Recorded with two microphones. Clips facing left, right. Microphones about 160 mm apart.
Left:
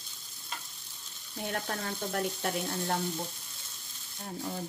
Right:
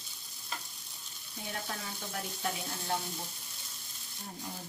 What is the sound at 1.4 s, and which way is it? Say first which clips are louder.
A woman's voice: left 6 dB; 60° left (ahead or behind).